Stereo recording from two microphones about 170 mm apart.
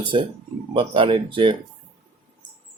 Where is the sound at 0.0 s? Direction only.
30° right (ahead or behind).